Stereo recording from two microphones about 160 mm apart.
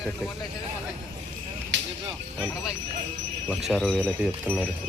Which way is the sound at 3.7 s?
Centre (ahead or behind).